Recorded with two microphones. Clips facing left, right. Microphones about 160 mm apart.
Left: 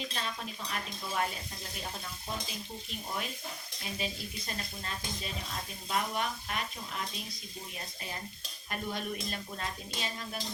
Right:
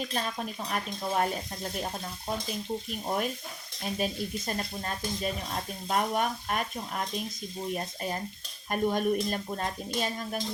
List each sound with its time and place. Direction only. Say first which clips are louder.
0.1 s speech: right 6 dB; 45° right (ahead or behind)
2.5 s speech: right 9 dB; 50° right (ahead or behind)